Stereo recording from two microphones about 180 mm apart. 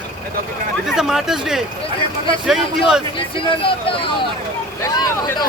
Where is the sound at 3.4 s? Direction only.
30° left (ahead or behind).